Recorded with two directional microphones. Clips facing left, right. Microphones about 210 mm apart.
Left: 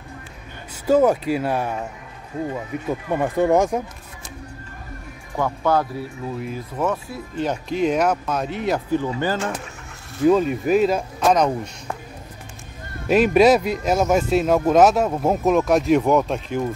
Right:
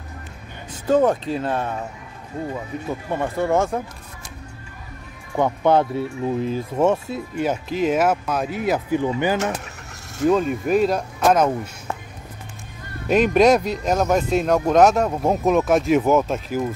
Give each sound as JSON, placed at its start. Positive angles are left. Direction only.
{"t": 0.8, "sound": "speech", "side_deg": 10}
{"t": 2.9, "sound": "speech", "side_deg": 15}
{"t": 5.3, "sound": "speech", "side_deg": -20}
{"t": 7.3, "sound": "speech", "side_deg": -5}
{"t": 9.0, "sound": "speech", "side_deg": -15}
{"t": 10.2, "sound": "speech", "side_deg": 0}
{"t": 13.1, "sound": "speech", "side_deg": 5}